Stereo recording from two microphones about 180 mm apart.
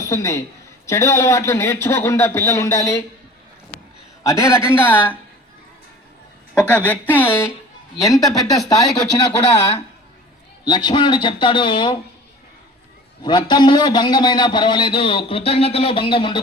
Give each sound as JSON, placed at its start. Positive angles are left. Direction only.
{"t": 0.0, "sound": "a woman's voice", "side_deg": 15}
{"t": 4.2, "sound": "a man's voice", "side_deg": 15}
{"t": 6.5, "sound": "a woman's voice", "side_deg": 5}
{"t": 10.7, "sound": "a man's voice", "side_deg": 25}
{"t": 13.2, "sound": "a man's voice", "side_deg": 25}